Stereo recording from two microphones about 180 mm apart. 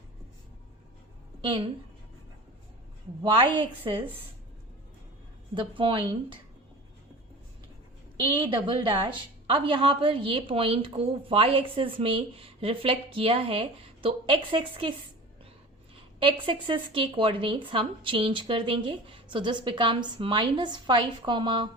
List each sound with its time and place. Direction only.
1.4 s a woman's voice: 30° right (ahead or behind)
3.3 s a woman's voice: 30° right (ahead or behind)
5.5 s a woman's voice: 30° right (ahead or behind)
8.1 s a woman's voice: 25° right (ahead or behind)
16.2 s a woman's voice: 30° right (ahead or behind)